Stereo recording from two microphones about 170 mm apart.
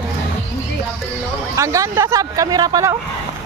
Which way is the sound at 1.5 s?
20° right (ahead or behind).